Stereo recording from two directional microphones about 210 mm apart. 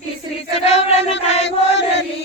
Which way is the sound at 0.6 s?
30° left (ahead or behind).